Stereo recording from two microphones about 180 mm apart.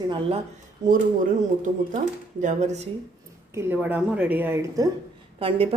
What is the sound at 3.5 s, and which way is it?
Speech, 10° right (ahead or behind).